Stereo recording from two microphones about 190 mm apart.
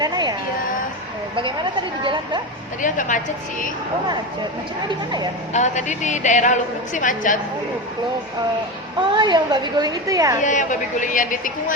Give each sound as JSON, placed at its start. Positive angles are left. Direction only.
{"t": 0.0, "sound": "a woman's voice", "side_deg": -20}
{"t": 1.4, "sound": "a woman's voice", "side_deg": -25}
{"t": 2.8, "sound": "a woman's voice", "side_deg": 45}
{"t": 5.5, "sound": "a woman's voice", "side_deg": 40}
{"t": 9.0, "sound": "a woman's voice", "side_deg": -25}
{"t": 10.4, "sound": "a woman's voice", "side_deg": 40}